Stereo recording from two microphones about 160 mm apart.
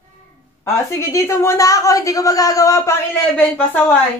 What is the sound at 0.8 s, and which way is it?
Speech, 20° left (ahead or behind).